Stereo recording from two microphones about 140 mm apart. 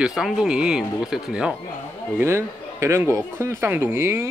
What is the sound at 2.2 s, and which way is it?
A man's voice, 20° right (ahead or behind).